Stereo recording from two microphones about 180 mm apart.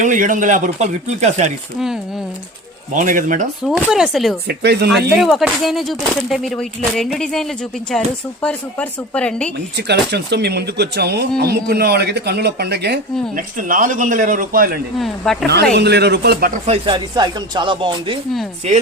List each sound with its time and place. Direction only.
0.0 s speech: 45° right (ahead or behind)
2.9 s speech: 45° right (ahead or behind)
3.6 s speech: 5° right (ahead or behind)
4.4 s speech: 65° right (ahead or behind)
4.9 s speech: centre (ahead or behind)
9.7 s speech: 70° right (ahead or behind)
13.3 s speech: 50° right (ahead or behind)
14.9 s speech: centre (ahead or behind)
15.8 s speech: 65° right (ahead or behind)
16.6 s speech: 30° right (ahead or behind)